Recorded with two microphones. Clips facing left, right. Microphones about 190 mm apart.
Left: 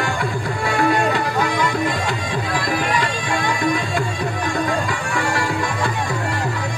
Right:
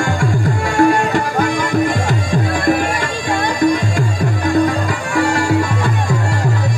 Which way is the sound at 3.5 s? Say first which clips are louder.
Right 6 dB; 45° right (ahead or behind).